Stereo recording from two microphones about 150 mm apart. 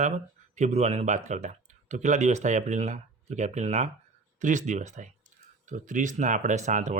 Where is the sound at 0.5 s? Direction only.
45° right (ahead or behind).